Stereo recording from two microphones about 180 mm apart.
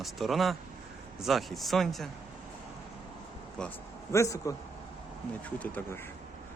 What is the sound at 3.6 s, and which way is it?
A man's voice, 15° left (ahead or behind).